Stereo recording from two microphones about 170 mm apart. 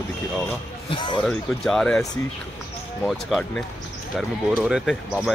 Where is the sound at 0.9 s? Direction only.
30° left (ahead or behind).